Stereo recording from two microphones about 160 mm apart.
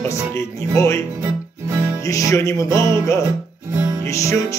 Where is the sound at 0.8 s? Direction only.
20° left (ahead or behind).